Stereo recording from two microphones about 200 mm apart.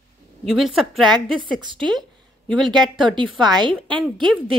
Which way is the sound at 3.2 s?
Centre (ahead or behind).